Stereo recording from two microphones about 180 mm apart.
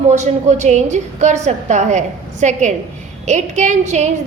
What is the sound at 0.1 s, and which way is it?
A woman's voice, 40° right (ahead or behind).